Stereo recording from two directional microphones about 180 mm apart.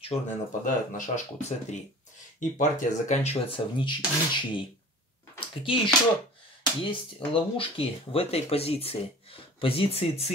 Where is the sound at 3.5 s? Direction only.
25° left (ahead or behind).